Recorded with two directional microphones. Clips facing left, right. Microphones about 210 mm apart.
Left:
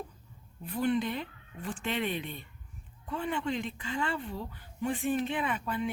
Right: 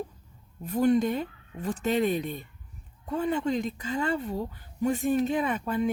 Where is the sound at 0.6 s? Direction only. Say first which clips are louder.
Right 6 dB; 45° right (ahead or behind).